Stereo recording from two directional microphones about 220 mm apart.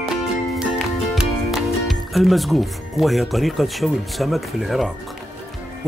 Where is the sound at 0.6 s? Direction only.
Centre (ahead or behind).